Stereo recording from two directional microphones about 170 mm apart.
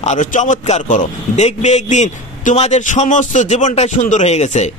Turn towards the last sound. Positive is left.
turn(degrees=40)  # may be behind; listen again after turning